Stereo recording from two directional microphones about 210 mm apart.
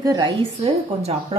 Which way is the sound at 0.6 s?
30° right (ahead or behind).